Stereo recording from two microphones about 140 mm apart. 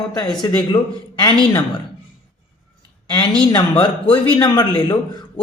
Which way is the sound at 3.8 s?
30° left (ahead or behind).